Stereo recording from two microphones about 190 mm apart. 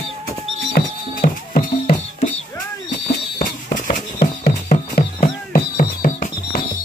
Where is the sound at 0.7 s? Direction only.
50° left (ahead or behind).